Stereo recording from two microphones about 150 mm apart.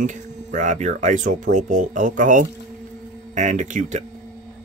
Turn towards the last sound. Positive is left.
turn(degrees=-55)  # may be behind; listen again after turning